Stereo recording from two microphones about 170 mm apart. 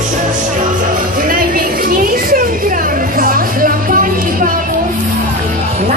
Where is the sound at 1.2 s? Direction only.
55° right (ahead or behind).